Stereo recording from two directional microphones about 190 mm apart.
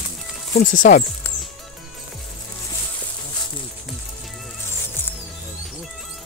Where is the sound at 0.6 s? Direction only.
45° left (ahead or behind).